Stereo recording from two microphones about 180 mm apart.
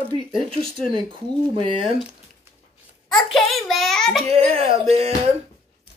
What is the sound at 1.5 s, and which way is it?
Speech, 30° right (ahead or behind).